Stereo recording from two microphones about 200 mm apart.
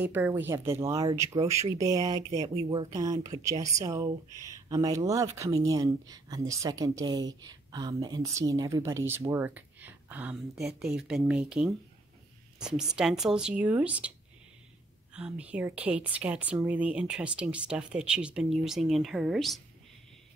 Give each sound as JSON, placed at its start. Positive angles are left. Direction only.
{"t": 0.0, "sound": "a woman's voice", "side_deg": -10}
{"t": 15.1, "sound": "a woman's voice", "side_deg": -5}